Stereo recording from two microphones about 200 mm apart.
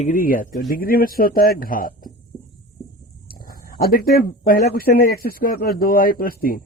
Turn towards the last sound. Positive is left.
turn(degrees=45)  # may be behind; listen again after turning